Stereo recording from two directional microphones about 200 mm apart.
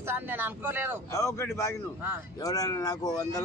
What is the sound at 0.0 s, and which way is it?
Speech, 10° right (ahead or behind).